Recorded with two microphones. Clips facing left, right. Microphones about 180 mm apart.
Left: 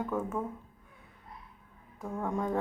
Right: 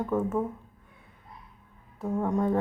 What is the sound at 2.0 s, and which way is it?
Speech, 20° right (ahead or behind).